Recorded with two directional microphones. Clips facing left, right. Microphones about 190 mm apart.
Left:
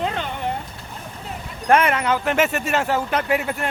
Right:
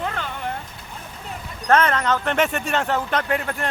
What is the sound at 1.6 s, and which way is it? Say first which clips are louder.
Speech: left 1 dB; 10° left (ahead or behind).